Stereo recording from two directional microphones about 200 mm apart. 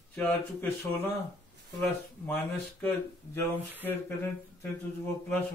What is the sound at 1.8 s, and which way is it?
Speech, 10° left (ahead or behind).